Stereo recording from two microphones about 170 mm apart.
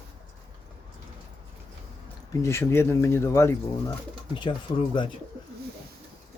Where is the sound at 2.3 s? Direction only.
15° left (ahead or behind).